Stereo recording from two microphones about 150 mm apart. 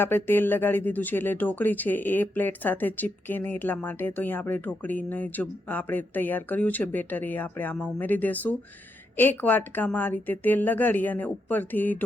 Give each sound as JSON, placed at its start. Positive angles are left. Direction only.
{"t": 0.0, "sound": "speech", "side_deg": 15}